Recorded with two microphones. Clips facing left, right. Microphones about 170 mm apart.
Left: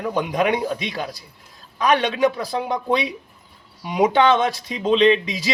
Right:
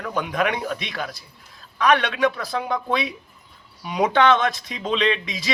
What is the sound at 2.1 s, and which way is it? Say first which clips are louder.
Speech: left 2 dB; 20° left (ahead or behind).